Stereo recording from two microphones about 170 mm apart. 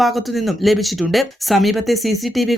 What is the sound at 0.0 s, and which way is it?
Speech, centre (ahead or behind).